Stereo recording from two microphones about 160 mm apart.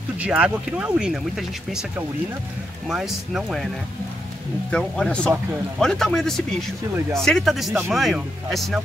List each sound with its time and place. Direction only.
0.2 s speech: 5° right (ahead or behind)
4.6 s speech: 5° left (ahead or behind)